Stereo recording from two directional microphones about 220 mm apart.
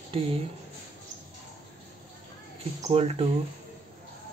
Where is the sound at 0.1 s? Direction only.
25° right (ahead or behind).